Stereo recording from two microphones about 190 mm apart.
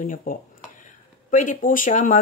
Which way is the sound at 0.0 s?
45° left (ahead or behind).